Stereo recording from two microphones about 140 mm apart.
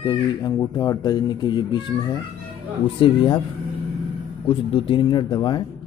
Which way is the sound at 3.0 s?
35° left (ahead or behind).